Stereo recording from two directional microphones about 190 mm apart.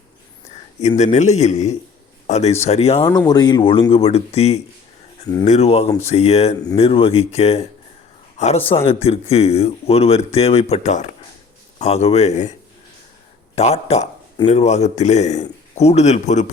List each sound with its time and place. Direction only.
0.8 s speech: 35° left (ahead or behind)
3.1 s speech: 20° left (ahead or behind); by 12.5 s 35° left (ahead or behind)
13.6 s speech: 35° left (ahead or behind)